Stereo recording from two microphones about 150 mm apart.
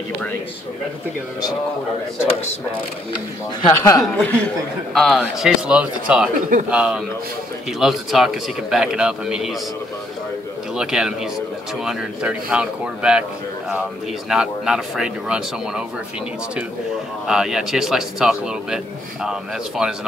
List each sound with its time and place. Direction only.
3.6 s a man's voice: 25° left (ahead or behind)
4.0 s a man's voice: 10° left (ahead or behind)
10.8 s a man's voice: 5° right (ahead or behind)
14.3 s a man's voice: 5° right (ahead or behind)
17.3 s a man's voice: 5° right (ahead or behind)
19.8 s a man's voice: 5° right (ahead or behind)